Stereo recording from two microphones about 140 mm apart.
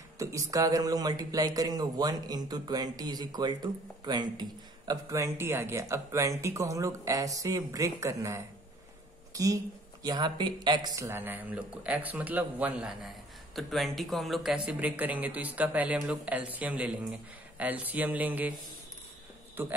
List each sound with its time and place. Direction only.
0.2 s a man's voice: 20° right (ahead or behind)